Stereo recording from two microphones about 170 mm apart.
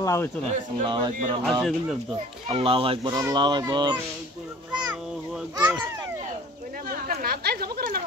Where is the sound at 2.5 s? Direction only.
35° right (ahead or behind).